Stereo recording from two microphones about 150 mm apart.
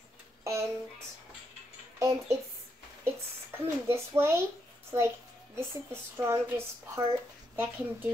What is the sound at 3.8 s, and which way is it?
Speech, 15° right (ahead or behind).